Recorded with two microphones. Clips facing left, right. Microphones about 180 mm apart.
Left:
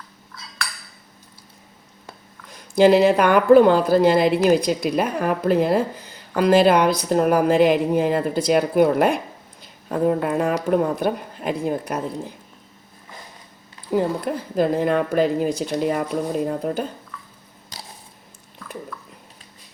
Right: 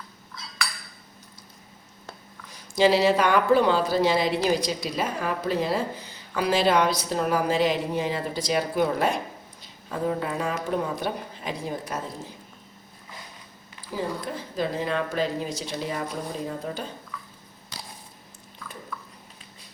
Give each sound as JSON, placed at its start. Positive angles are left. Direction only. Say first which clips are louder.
{"t": 2.5, "sound": "speech", "louder": "left 6 dB", "side_deg": 55}
{"t": 13.9, "sound": "speech", "louder": "left 9 dB", "side_deg": 60}